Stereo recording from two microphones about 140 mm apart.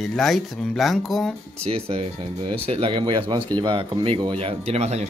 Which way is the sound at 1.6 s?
45° right (ahead or behind).